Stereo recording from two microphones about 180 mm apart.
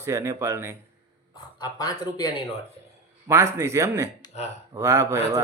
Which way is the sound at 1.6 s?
20° left (ahead or behind).